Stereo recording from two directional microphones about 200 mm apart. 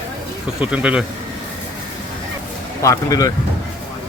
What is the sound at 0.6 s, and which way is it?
Speech, 5° right (ahead or behind).